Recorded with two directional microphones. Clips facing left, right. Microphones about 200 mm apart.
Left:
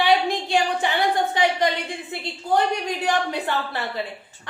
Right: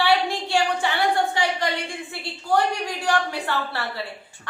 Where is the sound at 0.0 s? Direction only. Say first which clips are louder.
Left 1 dB; 20° left (ahead or behind).